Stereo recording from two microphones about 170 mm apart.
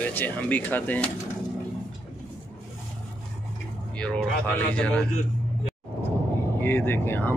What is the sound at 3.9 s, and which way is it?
Speech, 5° left (ahead or behind).